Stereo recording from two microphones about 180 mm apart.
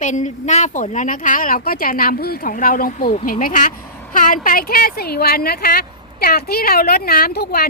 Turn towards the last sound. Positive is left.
turn(degrees=60)  # may be behind; listen again after turning